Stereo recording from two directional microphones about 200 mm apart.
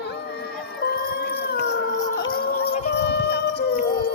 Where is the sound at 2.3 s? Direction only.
50° left (ahead or behind).